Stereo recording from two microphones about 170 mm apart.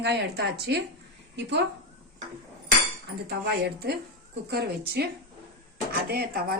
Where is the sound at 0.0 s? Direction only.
75° right (ahead or behind).